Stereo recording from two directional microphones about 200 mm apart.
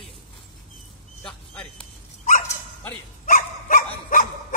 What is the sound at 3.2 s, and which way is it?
Dog, 40° left (ahead or behind).